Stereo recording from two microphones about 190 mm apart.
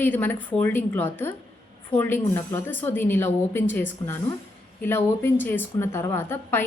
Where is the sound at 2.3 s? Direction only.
10° left (ahead or behind).